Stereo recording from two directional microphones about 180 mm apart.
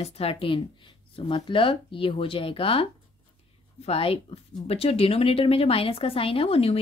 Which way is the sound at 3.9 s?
30° left (ahead or behind).